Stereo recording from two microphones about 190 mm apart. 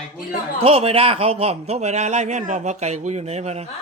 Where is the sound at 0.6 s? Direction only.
30° right (ahead or behind).